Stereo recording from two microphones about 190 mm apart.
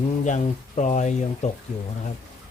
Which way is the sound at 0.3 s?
40° left (ahead or behind).